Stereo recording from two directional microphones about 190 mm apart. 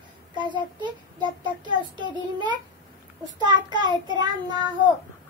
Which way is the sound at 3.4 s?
20° right (ahead or behind).